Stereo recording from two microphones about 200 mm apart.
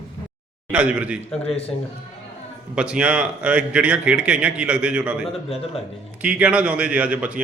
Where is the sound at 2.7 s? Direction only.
5° right (ahead or behind).